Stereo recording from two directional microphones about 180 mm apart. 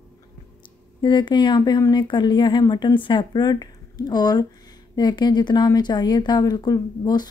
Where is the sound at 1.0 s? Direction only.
25° left (ahead or behind).